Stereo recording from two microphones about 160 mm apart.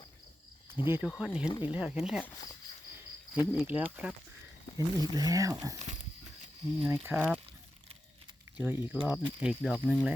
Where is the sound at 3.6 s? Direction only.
10° right (ahead or behind).